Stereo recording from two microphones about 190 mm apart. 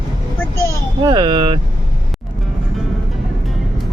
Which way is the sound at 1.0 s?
20° right (ahead or behind).